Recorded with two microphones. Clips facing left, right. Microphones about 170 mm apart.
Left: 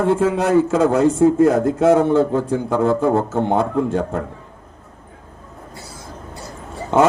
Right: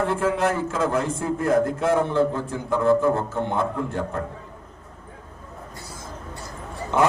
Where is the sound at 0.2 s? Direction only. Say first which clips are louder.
Left 7 dB; 85° left.